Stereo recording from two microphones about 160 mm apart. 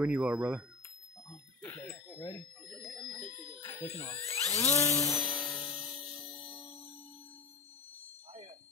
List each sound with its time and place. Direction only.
0.0 s speech: 5° right (ahead or behind)
1.3 s bicycle bell: 20° left (ahead or behind)
2.7 s bicycle bell: 5° left (ahead or behind)
3.6 s speech: 15° left (ahead or behind)
4.4 s dental drill: 15° left (ahead or behind)
5.2 s music: 5° left (ahead or behind)